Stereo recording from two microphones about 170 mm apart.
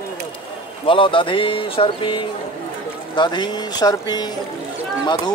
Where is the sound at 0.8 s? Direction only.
30° left (ahead or behind).